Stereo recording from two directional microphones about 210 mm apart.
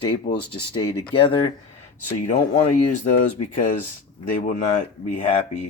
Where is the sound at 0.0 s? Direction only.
25° left (ahead or behind).